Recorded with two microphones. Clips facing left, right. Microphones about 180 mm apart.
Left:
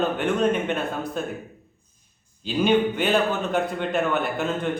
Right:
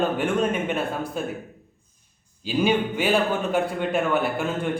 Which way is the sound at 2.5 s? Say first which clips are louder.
Left 2 dB; 5° right (ahead or behind).